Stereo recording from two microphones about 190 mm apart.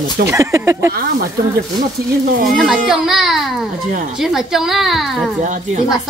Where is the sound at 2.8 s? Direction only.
Centre (ahead or behind).